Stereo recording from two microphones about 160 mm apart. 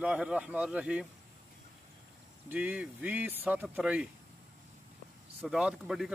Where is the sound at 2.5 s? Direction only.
10° right (ahead or behind).